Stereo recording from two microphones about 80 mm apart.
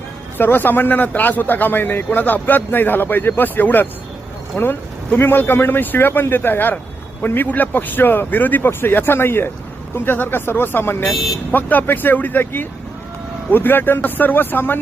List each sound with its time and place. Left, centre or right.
0.3 s a man's voice: left